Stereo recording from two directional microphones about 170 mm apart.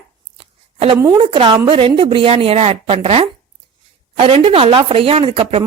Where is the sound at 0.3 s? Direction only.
30° right (ahead or behind).